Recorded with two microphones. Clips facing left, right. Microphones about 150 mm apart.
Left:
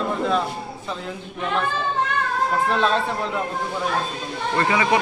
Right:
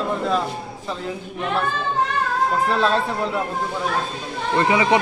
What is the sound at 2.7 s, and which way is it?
Speech, centre (ahead or behind).